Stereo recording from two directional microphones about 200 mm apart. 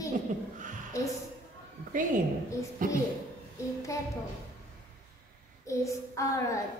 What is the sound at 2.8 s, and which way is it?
Speech, 45° right (ahead or behind).